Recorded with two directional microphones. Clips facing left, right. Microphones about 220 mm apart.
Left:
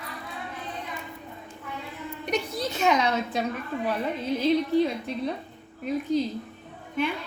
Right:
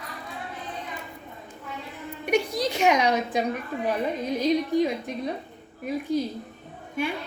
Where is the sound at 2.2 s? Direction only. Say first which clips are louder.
Right 5 dB; 10° right (ahead or behind).